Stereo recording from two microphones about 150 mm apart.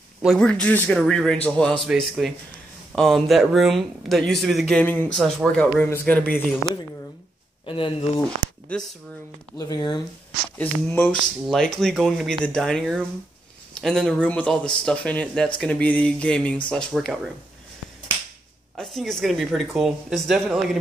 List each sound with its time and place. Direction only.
0.2 s speech: centre (ahead or behind)
7.6 s speech: 35° left (ahead or behind)
8.6 s speech: 5° left (ahead or behind)
9.6 s speech: 25° left (ahead or behind)
10.6 s speech: 10° left (ahead or behind)
18.8 s speech: centre (ahead or behind)